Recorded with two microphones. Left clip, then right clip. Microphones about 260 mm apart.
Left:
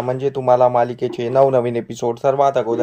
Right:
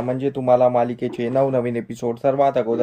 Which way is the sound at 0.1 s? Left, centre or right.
Centre.